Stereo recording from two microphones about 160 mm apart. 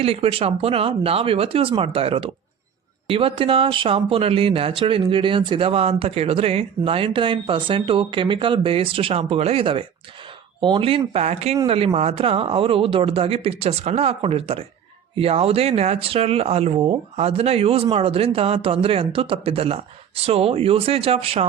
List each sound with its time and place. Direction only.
0.0 s speech: 35° right (ahead or behind)